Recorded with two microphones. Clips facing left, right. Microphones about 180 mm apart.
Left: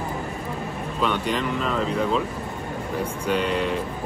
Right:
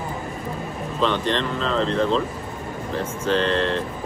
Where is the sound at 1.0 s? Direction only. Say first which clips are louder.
Right 2 dB; 10° left (ahead or behind).